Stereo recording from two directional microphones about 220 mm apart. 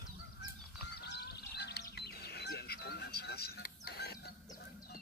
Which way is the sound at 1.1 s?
50° left (ahead or behind).